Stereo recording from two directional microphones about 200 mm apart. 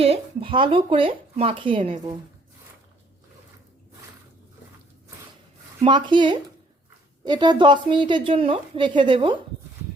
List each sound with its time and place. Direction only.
0.0 s speech: 30° right (ahead or behind)
5.8 s speech: 25° right (ahead or behind)